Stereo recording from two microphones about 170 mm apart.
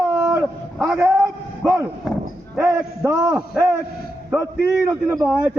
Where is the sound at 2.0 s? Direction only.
5° left (ahead or behind).